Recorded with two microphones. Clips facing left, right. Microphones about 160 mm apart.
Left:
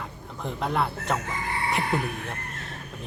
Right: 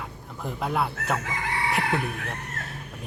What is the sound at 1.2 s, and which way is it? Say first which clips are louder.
Chicken: right 1 dB; 90° right.